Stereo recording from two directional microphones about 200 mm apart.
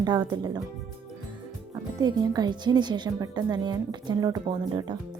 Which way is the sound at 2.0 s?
20° right (ahead or behind).